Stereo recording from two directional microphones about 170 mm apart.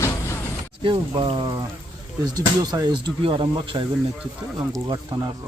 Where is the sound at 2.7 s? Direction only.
25° right (ahead or behind).